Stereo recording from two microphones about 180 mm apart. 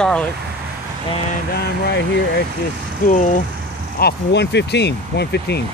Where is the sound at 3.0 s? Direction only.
50° left (ahead or behind).